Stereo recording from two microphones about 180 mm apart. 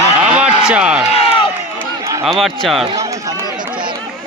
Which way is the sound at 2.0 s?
15° right (ahead or behind).